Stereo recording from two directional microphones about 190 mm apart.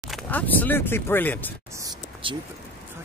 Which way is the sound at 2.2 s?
25° right (ahead or behind).